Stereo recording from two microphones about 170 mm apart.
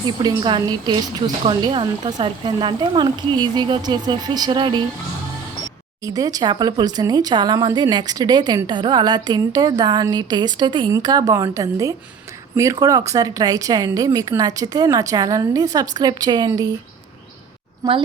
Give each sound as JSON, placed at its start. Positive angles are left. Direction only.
{"t": 0.2, "sound": "speech", "side_deg": -25}
{"t": 6.0, "sound": "speech", "side_deg": -20}